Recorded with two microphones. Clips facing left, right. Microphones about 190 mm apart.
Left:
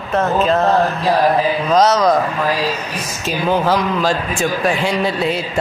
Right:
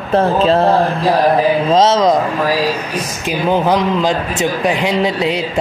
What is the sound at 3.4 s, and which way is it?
A man's voice, 20° right (ahead or behind).